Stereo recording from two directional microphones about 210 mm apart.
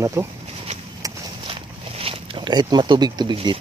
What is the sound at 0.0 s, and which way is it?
Speech, 15° right (ahead or behind).